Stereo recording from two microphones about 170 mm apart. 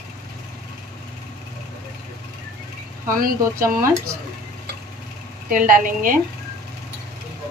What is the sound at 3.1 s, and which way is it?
Speech, 55° right (ahead or behind).